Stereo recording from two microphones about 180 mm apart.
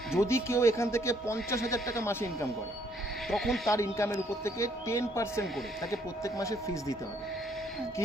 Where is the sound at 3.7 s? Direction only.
15° left (ahead or behind).